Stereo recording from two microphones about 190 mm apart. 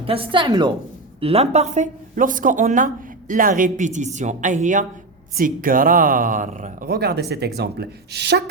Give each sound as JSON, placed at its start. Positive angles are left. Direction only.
{"t": 0.0, "sound": "a woman's voice", "side_deg": -30}